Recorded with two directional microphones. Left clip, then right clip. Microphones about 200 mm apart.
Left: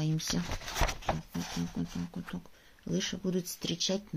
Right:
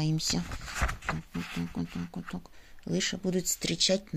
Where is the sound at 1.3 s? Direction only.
30° left (ahead or behind).